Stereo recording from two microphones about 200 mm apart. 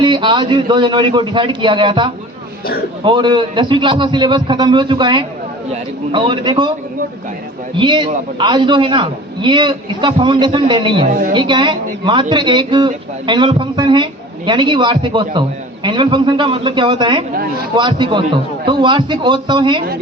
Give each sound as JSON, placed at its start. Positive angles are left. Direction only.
{"t": 0.0, "sound": "a man's voice", "side_deg": -25}
{"t": 7.8, "sound": "a man's voice", "side_deg": -25}